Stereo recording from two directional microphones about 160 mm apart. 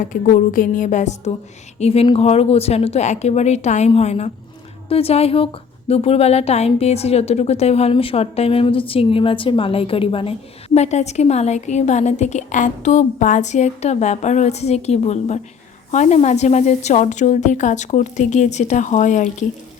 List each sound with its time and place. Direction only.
0.0 s a woman's voice: 55° left (ahead or behind)